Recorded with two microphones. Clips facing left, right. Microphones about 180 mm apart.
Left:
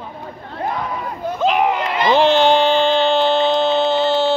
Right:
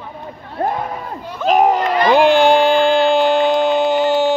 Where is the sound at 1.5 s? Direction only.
40° right (ahead or behind).